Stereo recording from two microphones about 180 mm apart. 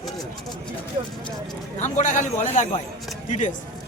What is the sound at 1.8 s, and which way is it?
A man's voice, 45° left (ahead or behind).